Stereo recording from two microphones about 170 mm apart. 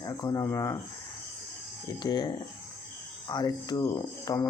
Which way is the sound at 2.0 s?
25° left (ahead or behind).